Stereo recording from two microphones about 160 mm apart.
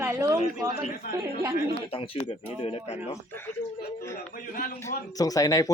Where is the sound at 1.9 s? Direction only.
35° left (ahead or behind).